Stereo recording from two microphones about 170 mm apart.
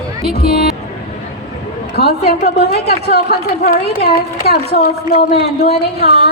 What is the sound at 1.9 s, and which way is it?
A woman's voice, 65° left (ahead or behind).